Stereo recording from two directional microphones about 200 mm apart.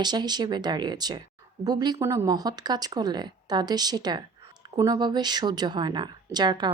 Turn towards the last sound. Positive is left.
turn(degrees=-20)  # may be behind; listen again after turning